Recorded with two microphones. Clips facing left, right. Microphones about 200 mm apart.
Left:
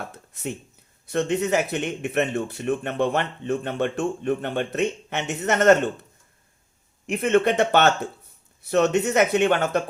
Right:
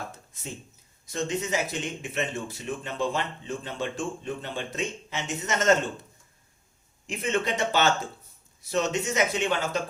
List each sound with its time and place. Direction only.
0.3 s speech: 65° left (ahead or behind)
7.1 s speech: 60° left (ahead or behind)